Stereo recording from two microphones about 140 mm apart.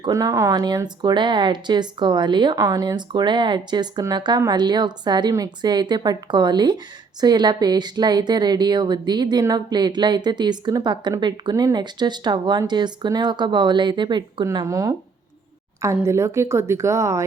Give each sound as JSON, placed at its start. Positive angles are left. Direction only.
{"t": 0.0, "sound": "a woman's voice", "side_deg": -25}